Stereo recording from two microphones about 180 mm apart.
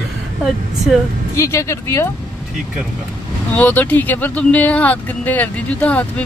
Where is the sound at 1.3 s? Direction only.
15° left (ahead or behind).